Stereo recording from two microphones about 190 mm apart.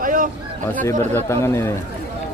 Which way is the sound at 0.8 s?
15° left (ahead or behind).